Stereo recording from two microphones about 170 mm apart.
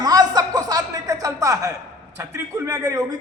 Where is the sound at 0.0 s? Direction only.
20° right (ahead or behind).